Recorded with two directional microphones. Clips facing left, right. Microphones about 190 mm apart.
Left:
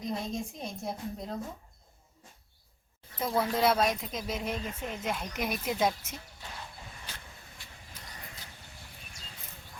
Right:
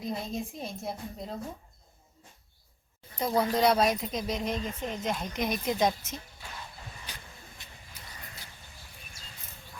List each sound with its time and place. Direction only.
0.0 s speech: 5° right (ahead or behind)
3.2 s speech: centre (ahead or behind)
7.1 s vehicle: 15° right (ahead or behind)